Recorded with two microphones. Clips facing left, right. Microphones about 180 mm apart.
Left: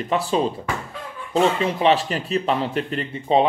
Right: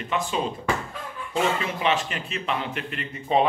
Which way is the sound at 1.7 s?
35° left (ahead or behind).